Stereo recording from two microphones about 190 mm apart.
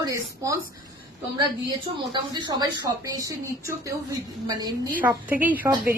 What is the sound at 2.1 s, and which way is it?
A child's voice, 20° right (ahead or behind).